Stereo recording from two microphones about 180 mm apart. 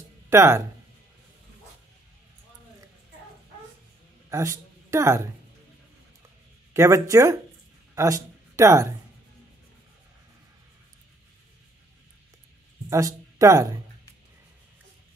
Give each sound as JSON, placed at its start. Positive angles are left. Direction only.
{"t": 0.3, "sound": "speech", "side_deg": -15}
{"t": 4.3, "sound": "a woman's voice", "side_deg": -15}
{"t": 6.7, "sound": "speech", "side_deg": -15}
{"t": 12.9, "sound": "speech", "side_deg": -20}